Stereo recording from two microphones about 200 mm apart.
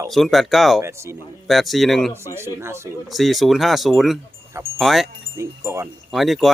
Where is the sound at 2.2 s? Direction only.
15° right (ahead or behind).